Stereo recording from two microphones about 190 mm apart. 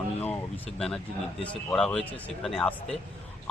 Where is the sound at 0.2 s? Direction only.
10° left (ahead or behind).